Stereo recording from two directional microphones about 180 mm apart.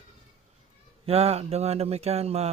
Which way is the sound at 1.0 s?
35° right (ahead or behind).